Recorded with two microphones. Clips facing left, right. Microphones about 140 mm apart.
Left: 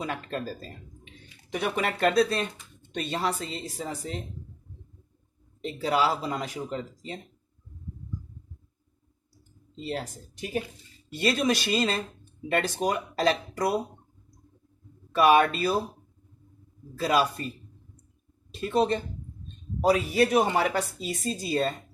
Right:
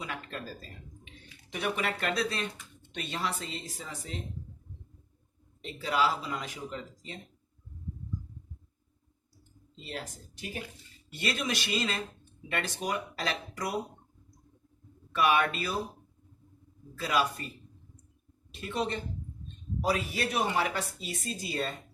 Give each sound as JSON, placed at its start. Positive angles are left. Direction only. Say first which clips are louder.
{"t": 0.0, "sound": "a sound", "louder": "left 7 dB", "side_deg": 40}
{"t": 1.5, "sound": "speech", "louder": "left 4 dB", "side_deg": 45}
{"t": 5.8, "sound": "speech", "louder": "left 4 dB", "side_deg": 35}
{"t": 9.8, "sound": "speech", "louder": "left 7 dB", "side_deg": 35}
{"t": 11.1, "sound": "speech", "louder": "left 8 dB", "side_deg": 35}
{"t": 15.1, "sound": "speech", "louder": "left 6 dB", "side_deg": 40}
{"t": 17.0, "sound": "speech", "louder": "left 5 dB", "side_deg": 35}
{"t": 18.6, "sound": "speech", "louder": "left 8 dB", "side_deg": 35}